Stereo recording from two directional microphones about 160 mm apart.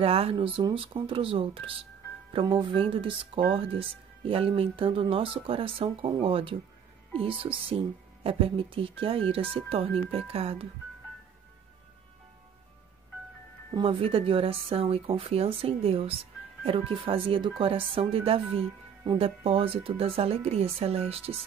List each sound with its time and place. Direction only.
0.0 s speech: 35° right (ahead or behind)
13.7 s speech: 35° right (ahead or behind)